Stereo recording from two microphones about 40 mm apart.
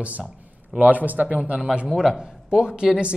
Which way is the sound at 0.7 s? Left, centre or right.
Right.